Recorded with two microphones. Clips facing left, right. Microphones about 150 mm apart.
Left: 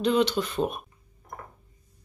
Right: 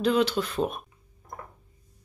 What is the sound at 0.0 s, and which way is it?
Speech, 5° right (ahead or behind).